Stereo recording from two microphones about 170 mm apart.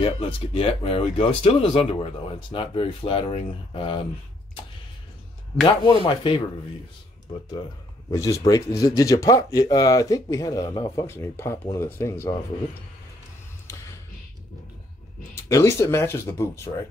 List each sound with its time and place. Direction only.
0.0 s speech: 35° left (ahead or behind)
5.7 s speech: 30° left (ahead or behind)
8.1 s speech: 20° left (ahead or behind)
13.7 s tap: 15° left (ahead or behind)
15.4 s speech: 20° left (ahead or behind)